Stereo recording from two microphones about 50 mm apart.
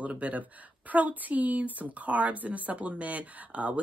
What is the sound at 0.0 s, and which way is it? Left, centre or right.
A woman's voice, right.